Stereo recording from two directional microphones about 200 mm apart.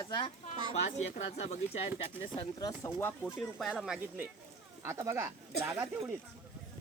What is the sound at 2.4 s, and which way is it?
Speech, 20° left (ahead or behind).